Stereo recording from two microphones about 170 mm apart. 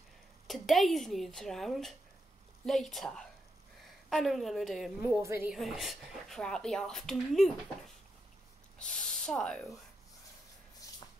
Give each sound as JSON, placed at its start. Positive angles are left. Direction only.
{"t": 0.5, "sound": "speech", "side_deg": 0}
{"t": 5.1, "sound": "a woman's voice", "side_deg": -15}
{"t": 5.5, "sound": "speech", "side_deg": 0}
{"t": 8.7, "sound": "speech", "side_deg": 5}
{"t": 10.8, "sound": "a sound", "side_deg": 20}